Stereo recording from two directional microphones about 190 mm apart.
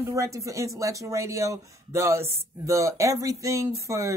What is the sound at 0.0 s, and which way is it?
Speech, 15° right (ahead or behind).